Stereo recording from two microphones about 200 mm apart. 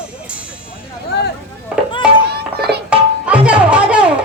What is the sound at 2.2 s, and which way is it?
Children playing, 55° right (ahead or behind).